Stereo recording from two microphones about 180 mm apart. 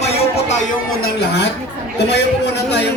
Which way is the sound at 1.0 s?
65° left (ahead or behind).